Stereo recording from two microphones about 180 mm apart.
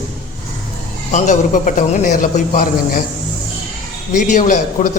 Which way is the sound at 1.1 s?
40° left (ahead or behind).